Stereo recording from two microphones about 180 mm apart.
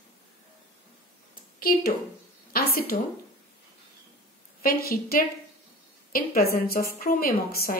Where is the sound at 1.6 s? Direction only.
55° left (ahead or behind).